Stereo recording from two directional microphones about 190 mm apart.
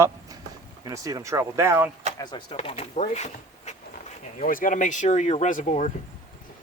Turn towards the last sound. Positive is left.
turn(degrees=40)  # may be behind; listen again after turning